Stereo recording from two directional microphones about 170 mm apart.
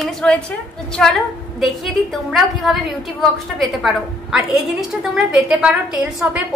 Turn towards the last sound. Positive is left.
turn(degrees=-5)  # may be behind; listen again after turning